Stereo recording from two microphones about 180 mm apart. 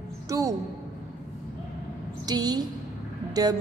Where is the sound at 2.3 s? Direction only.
20° right (ahead or behind).